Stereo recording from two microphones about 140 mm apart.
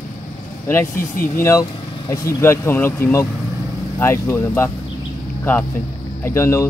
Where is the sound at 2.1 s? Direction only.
20° left (ahead or behind).